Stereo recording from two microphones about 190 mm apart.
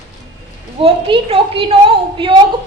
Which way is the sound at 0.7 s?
30° right (ahead or behind).